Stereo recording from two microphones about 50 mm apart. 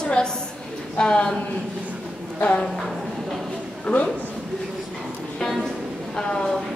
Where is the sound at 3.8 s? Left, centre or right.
Left.